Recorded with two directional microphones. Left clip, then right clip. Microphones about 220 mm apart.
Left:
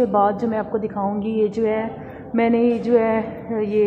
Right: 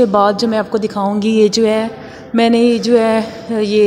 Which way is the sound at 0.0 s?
40° right (ahead or behind).